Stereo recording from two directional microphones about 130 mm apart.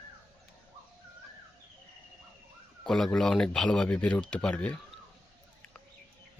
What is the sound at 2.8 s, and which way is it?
Speech, 5° left (ahead or behind).